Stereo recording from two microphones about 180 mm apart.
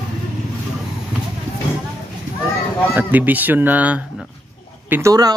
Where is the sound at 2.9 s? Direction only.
10° right (ahead or behind).